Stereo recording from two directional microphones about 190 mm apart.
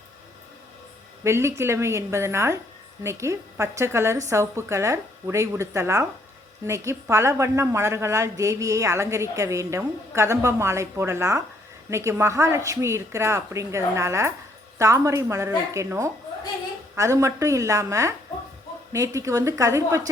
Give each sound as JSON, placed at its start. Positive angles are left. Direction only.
{"t": 1.2, "sound": "a woman's voice", "side_deg": -15}